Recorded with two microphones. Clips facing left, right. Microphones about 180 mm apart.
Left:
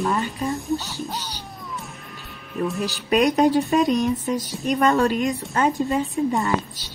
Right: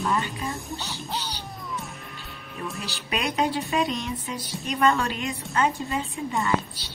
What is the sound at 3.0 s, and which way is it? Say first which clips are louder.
A woman's voice: left 9 dB; 45° left (ahead or behind).